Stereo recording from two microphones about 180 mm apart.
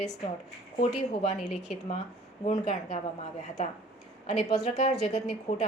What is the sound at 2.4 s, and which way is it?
Speech, 35° left (ahead or behind).